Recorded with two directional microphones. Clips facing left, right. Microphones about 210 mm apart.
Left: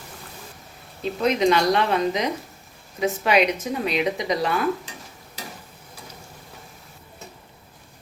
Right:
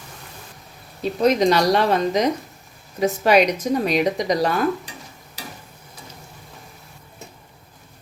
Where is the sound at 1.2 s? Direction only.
40° right (ahead or behind).